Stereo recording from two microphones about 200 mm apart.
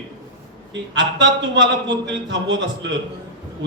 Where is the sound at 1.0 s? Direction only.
60° right (ahead or behind).